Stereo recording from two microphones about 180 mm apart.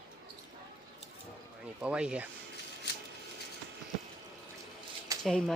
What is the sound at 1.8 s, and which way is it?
Speech, 5° right (ahead or behind).